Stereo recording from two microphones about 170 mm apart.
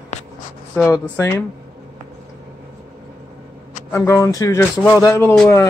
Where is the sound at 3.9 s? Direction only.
15° left (ahead or behind).